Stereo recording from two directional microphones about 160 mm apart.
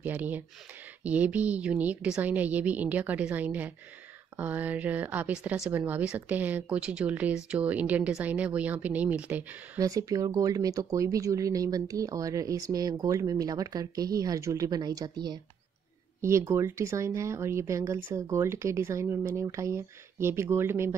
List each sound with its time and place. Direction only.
0.0 s speech: 10° right (ahead or behind)
9.8 s speech: 20° right (ahead or behind)